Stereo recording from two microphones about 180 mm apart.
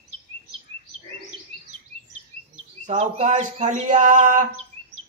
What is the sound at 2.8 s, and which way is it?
Bird, 40° right (ahead or behind).